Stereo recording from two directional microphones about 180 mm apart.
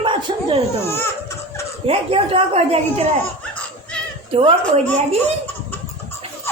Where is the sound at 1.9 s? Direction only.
30° right (ahead or behind).